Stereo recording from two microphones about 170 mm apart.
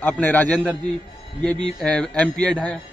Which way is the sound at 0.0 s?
10° left (ahead or behind).